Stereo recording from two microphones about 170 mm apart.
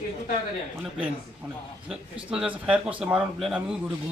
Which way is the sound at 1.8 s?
5° right (ahead or behind).